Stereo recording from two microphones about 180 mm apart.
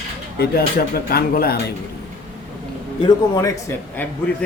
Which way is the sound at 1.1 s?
55° left (ahead or behind).